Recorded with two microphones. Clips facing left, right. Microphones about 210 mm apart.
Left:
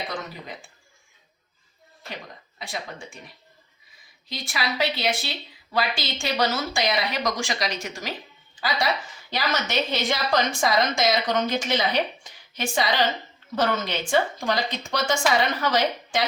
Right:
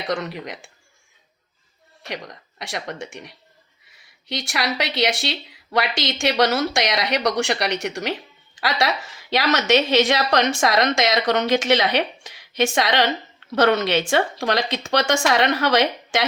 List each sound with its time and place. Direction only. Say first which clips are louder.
0.1 s speech: right 8 dB; 70° right (ahead or behind)
2.0 s speech: right 6 dB; 75° right (ahead or behind)
8.6 s a woman's voice: right 3 dB; 80° right